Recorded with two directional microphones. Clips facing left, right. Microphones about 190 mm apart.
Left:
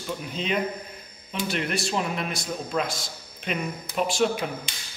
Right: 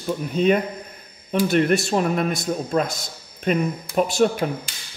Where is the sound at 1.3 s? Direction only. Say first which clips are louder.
Right 10 dB; 45° right (ahead or behind).